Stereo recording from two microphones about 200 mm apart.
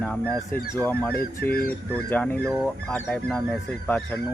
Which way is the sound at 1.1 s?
50° left (ahead or behind).